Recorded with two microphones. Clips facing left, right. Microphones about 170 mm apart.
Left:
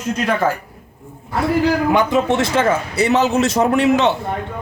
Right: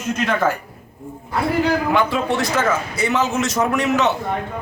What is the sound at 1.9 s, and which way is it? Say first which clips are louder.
A man's voice: left 3 dB; 20° left (ahead or behind).